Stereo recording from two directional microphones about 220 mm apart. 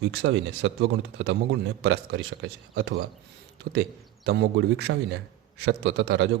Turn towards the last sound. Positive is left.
turn(degrees=-55)  # may be behind; listen again after turning